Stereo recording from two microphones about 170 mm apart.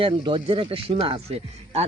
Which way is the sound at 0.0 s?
30° right (ahead or behind).